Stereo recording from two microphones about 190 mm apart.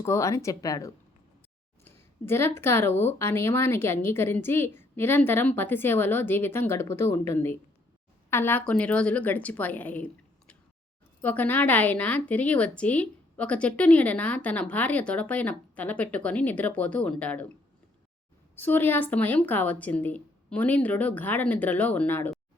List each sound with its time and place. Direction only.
0.0 s a woman's voice: 15° left (ahead or behind)
1.8 s a sound: 10° left (ahead or behind)
2.6 s a woman's voice: 10° left (ahead or behind)
18.5 s a woman's voice: 10° left (ahead or behind)